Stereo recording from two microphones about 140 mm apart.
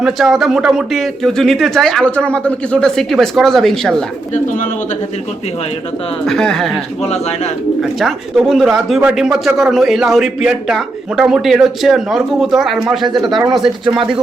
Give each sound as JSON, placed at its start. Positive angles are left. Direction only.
{"t": 0.0, "sound": "speech", "side_deg": 0}
{"t": 6.2, "sound": "speech", "side_deg": 5}
{"t": 7.0, "sound": "speech", "side_deg": 50}
{"t": 7.8, "sound": "speech", "side_deg": 0}